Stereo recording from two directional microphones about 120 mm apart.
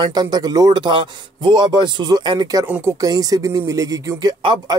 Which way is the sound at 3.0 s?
30° right (ahead or behind).